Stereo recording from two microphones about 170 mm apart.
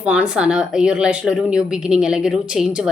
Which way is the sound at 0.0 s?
5° right (ahead or behind).